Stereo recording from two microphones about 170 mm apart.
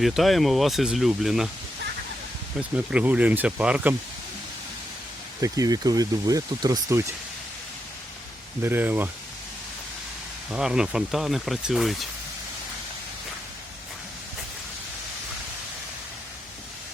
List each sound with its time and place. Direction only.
0.0 s speech: centre (ahead or behind)
2.6 s speech: 5° right (ahead or behind)
5.4 s speech: 20° right (ahead or behind)
8.6 s speech: 10° right (ahead or behind)
10.5 s speech: 5° right (ahead or behind)